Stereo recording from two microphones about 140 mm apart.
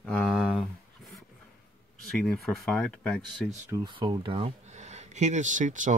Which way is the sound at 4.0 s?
35° right (ahead or behind).